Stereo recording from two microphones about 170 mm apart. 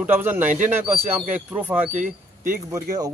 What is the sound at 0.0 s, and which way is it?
Speech, 10° right (ahead or behind).